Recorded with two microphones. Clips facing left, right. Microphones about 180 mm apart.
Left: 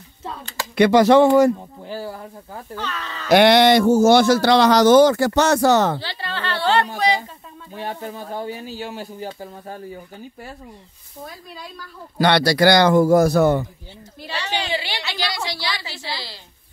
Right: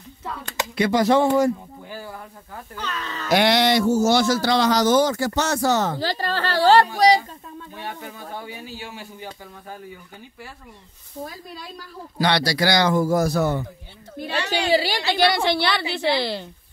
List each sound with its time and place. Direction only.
0.7 s speech: 75° left (ahead or behind)
2.9 s speech: 45° right (ahead or behind)
3.3 s a man's voice: 60° left (ahead or behind)
5.9 s speech: 40° right (ahead or behind)
7.8 s speech: 40° left (ahead or behind)
12.2 s a man's voice: 55° left (ahead or behind)
14.2 s a woman's voice: 55° right (ahead or behind)